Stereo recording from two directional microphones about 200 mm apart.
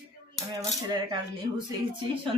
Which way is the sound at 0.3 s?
15° right (ahead or behind).